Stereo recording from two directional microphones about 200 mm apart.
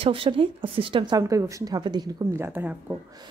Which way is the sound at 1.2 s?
15° right (ahead or behind).